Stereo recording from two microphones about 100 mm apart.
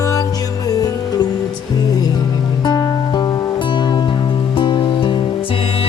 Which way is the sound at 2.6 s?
45° left (ahead or behind).